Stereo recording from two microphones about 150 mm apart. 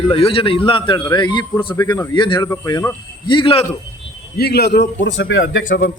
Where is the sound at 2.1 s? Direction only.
35° left (ahead or behind).